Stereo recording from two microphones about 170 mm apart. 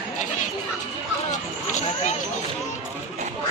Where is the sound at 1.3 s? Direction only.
45° left (ahead or behind).